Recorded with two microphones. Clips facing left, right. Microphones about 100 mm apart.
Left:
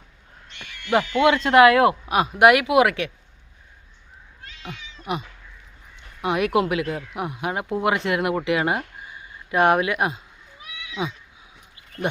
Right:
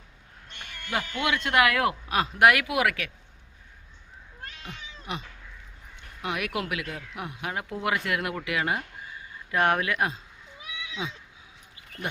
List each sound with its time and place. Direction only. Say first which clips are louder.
0.4 s a sound: left 1 dB; 45° right (ahead or behind)
1.3 s speech: left 9 dB; 35° left (ahead or behind)
4.4 s cat: right 3 dB; 50° right (ahead or behind)
5.1 s speech: left 8 dB; 20° left (ahead or behind)
6.2 s speech: left 10 dB; 25° left (ahead or behind)